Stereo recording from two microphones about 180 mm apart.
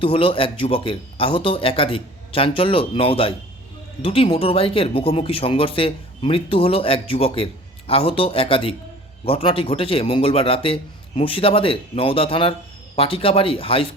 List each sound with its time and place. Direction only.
0.0 s speech: 30° left (ahead or behind)